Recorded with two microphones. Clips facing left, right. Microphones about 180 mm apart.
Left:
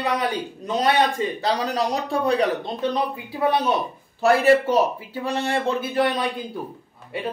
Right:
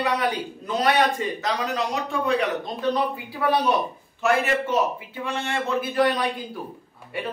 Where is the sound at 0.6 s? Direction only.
25° left (ahead or behind).